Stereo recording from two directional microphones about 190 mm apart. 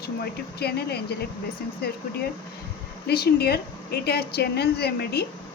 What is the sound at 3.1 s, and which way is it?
A woman's voice, 55° left (ahead or behind).